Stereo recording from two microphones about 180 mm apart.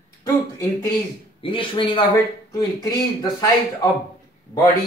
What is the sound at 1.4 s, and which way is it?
A man's voice, 30° left (ahead or behind).